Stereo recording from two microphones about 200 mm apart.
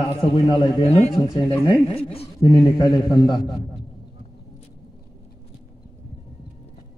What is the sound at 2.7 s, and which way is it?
Speech, 20° left (ahead or behind).